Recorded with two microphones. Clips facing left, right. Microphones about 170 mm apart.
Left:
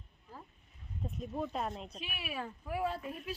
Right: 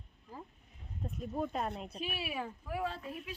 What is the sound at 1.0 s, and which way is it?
Speech, centre (ahead or behind).